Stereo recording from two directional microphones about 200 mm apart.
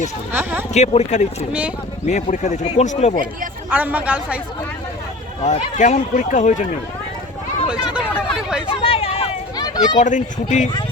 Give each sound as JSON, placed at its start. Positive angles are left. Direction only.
{"t": 0.7, "sound": "speech", "side_deg": 35}
{"t": 3.7, "sound": "a woman's voice", "side_deg": -10}
{"t": 5.4, "sound": "speech", "side_deg": 35}
{"t": 7.7, "sound": "chatter", "side_deg": -5}
{"t": 8.6, "sound": "a sound", "side_deg": 30}
{"t": 10.0, "sound": "speech", "side_deg": 40}